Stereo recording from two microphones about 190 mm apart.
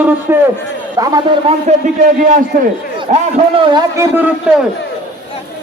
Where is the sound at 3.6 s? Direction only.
20° right (ahead or behind).